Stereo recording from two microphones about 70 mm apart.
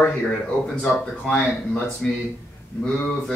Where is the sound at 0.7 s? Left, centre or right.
Centre.